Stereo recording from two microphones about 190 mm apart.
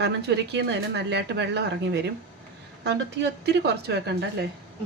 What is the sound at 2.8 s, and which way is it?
Speech, 65° right (ahead or behind).